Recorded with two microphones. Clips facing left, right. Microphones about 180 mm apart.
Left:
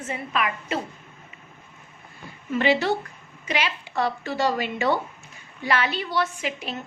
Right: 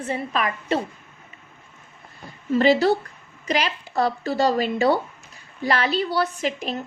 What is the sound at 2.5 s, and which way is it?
A woman's voice, 35° right (ahead or behind).